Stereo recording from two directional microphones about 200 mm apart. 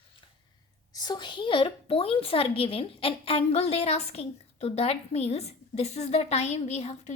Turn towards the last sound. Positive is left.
turn(degrees=35)  # may be behind; listen again after turning